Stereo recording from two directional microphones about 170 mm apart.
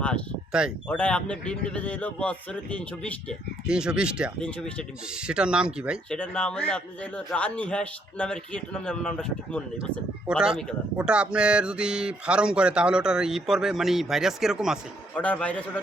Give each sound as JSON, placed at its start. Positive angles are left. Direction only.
{"t": 0.5, "sound": "speech", "side_deg": -5}
{"t": 0.9, "sound": "a man's voice", "side_deg": 5}
{"t": 3.7, "sound": "speech", "side_deg": -5}
{"t": 4.4, "sound": "speech", "side_deg": 5}
{"t": 5.2, "sound": "speech", "side_deg": -5}
{"t": 6.1, "sound": "a man's voice", "side_deg": 5}
{"t": 10.2, "sound": "speech", "side_deg": -5}
{"t": 15.2, "sound": "a man's voice", "side_deg": 10}